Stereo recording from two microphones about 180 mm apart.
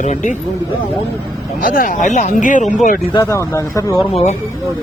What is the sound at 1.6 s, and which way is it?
Speech, 50° left (ahead or behind).